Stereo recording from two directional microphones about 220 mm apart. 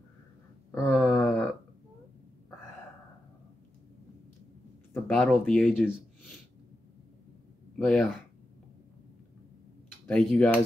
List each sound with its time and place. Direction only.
0.7 s a sound: 10° left (ahead or behind)
4.9 s speech: 5° left (ahead or behind)
7.8 s speech: 5° left (ahead or behind)
10.0 s speech: 5° left (ahead or behind)